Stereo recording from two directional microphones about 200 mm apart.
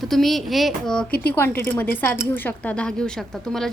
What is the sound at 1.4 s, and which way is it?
A woman's voice, 10° left (ahead or behind).